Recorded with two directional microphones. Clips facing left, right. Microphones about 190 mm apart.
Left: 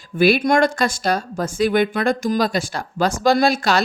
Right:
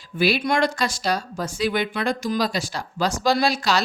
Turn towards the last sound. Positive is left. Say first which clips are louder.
# left 4 dB
turn(degrees=55)  # may be behind; listen again after turning